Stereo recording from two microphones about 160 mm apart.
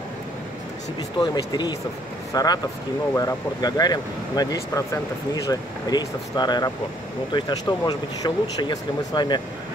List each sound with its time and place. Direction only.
1.2 s speech: 25° left (ahead or behind)